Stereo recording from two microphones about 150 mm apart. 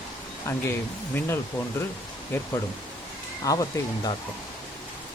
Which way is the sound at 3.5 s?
25° left (ahead or behind).